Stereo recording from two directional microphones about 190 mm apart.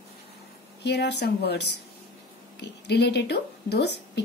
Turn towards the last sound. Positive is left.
turn(degrees=60)  # may be behind; listen again after turning